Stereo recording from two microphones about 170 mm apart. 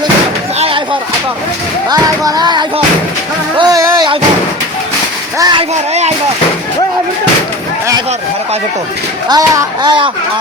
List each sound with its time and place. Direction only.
1.9 s music: 20° right (ahead or behind)
5.4 s music: 25° right (ahead or behind)
5.9 s speech: 40° right (ahead or behind)
9.3 s music: 25° right (ahead or behind)